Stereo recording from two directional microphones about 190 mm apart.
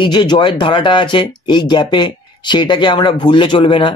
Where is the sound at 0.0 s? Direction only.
25° left (ahead or behind).